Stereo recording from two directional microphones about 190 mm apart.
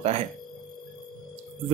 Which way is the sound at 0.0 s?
30° right (ahead or behind).